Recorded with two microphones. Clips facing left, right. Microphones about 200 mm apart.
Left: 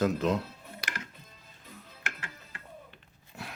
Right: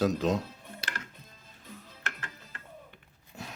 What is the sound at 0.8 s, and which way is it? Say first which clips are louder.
Music: even; 25° right (ahead or behind).